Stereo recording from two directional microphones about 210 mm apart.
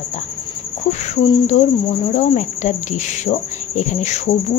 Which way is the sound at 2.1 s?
35° left (ahead or behind).